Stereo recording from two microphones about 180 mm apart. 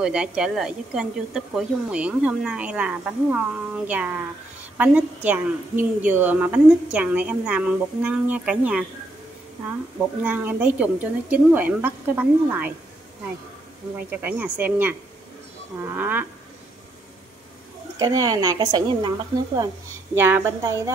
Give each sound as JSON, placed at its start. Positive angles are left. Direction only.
{"t": 0.0, "sound": "a woman's voice", "side_deg": -5}
{"t": 9.9, "sound": "a woman's voice", "side_deg": -10}
{"t": 14.1, "sound": "a woman's voice", "side_deg": -10}
{"t": 16.0, "sound": "a woman's voice", "side_deg": -10}
{"t": 17.9, "sound": "a woman's voice", "side_deg": -20}